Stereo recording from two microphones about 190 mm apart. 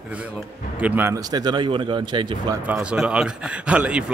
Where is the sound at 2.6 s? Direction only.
5° right (ahead or behind).